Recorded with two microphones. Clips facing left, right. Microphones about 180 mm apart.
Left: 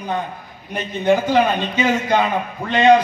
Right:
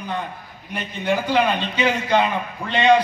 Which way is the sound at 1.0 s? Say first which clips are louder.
Left 4 dB; 50° left (ahead or behind).